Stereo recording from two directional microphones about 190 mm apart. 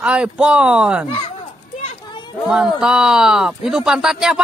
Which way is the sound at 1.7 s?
35° left (ahead or behind).